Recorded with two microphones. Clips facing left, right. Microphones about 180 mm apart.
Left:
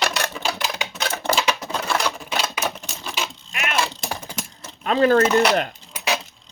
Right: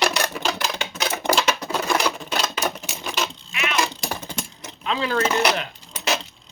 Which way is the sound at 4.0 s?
10° left (ahead or behind).